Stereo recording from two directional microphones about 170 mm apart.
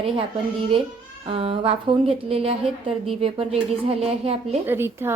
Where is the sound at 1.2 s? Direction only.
35° right (ahead or behind).